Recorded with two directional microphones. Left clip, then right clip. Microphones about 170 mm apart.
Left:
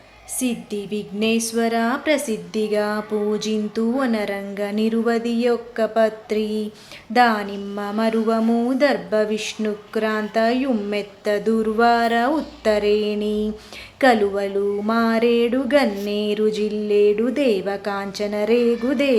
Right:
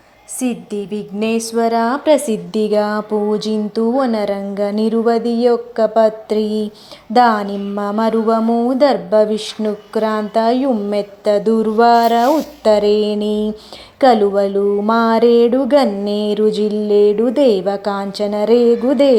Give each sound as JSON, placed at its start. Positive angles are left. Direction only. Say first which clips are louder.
{"t": 1.6, "sound": "speech", "louder": "right 8 dB", "side_deg": -20}
{"t": 8.1, "sound": "music", "louder": "right 5 dB", "side_deg": -15}
{"t": 8.8, "sound": "speech", "louder": "right 7 dB", "side_deg": -20}